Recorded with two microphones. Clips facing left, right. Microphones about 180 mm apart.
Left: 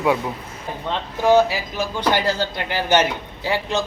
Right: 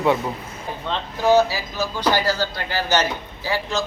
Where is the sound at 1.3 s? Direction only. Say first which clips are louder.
Left 1 dB; 15° left (ahead or behind).